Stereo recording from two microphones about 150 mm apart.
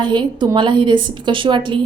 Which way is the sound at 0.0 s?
30° right (ahead or behind).